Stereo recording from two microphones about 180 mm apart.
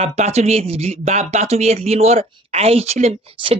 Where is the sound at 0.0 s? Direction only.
35° right (ahead or behind).